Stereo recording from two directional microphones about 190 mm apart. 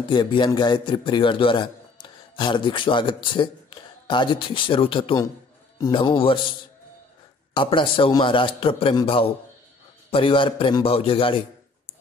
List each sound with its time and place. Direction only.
0.1 s a man's voice: 25° left (ahead or behind)
7.5 s a man's voice: 25° left (ahead or behind)